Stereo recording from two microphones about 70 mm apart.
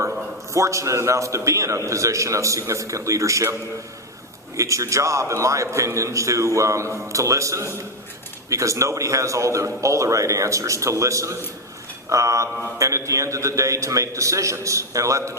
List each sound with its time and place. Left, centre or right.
0.5 s a man's voice: right
4.5 s a man's voice: right